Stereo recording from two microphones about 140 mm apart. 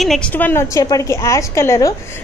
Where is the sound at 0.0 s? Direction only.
Centre (ahead or behind).